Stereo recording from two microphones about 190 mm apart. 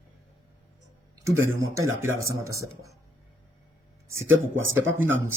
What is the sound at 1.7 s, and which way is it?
Speech, 15° right (ahead or behind).